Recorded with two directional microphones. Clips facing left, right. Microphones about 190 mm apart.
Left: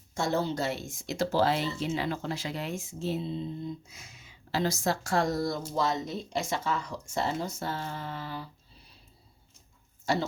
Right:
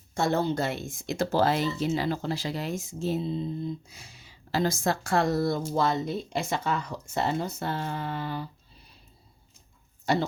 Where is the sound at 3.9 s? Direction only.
30° right (ahead or behind).